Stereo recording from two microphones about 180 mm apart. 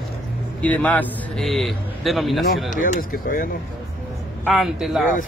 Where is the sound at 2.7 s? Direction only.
50° left (ahead or behind).